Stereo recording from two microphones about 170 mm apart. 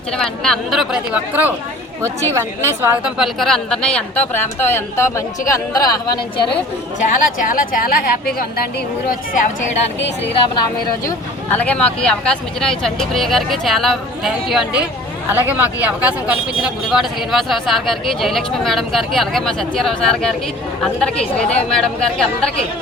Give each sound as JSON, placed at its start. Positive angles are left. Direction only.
{"t": 0.2, "sound": "a woman's voice", "side_deg": 5}
{"t": 7.0, "sound": "a woman's voice", "side_deg": 50}
{"t": 9.0, "sound": "speech", "side_deg": 50}
{"t": 11.5, "sound": "speech", "side_deg": 10}